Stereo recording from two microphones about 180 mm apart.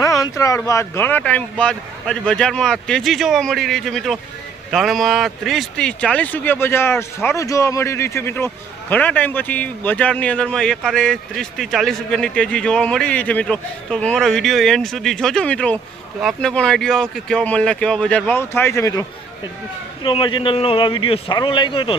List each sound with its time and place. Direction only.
0.0 s a man's voice: 20° left (ahead or behind)
20.0 s a man's voice: 25° left (ahead or behind)